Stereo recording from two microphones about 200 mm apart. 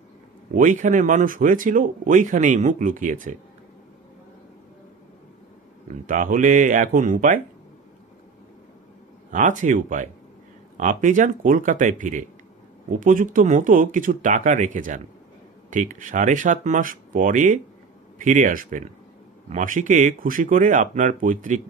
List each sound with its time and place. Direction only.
0.6 s speech: 40° right (ahead or behind)
6.0 s speech: 40° right (ahead or behind)
9.3 s speech: 40° right (ahead or behind)